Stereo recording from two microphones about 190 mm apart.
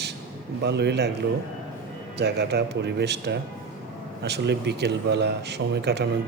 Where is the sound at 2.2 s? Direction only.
60° right (ahead or behind).